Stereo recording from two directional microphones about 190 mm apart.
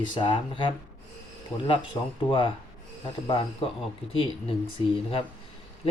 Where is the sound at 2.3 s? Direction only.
25° left (ahead or behind).